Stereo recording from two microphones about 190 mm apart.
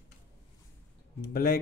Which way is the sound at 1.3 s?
55° left (ahead or behind).